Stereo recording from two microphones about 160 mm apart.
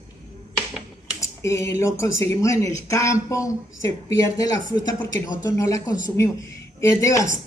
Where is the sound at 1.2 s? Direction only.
20° left (ahead or behind).